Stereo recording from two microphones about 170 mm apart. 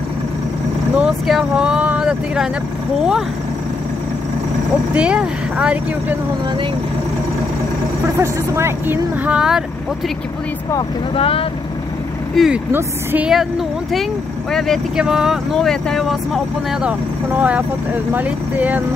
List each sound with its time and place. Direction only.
0.9 s speech: 5° right (ahead or behind)
4.9 s speech: 5° right (ahead or behind)
8.2 s speech: 15° right (ahead or behind)
11.1 s speech: 35° left (ahead or behind)
12.4 s speech: centre (ahead or behind)
14.5 s speech: centre (ahead or behind)
17.4 s speech: 10° right (ahead or behind)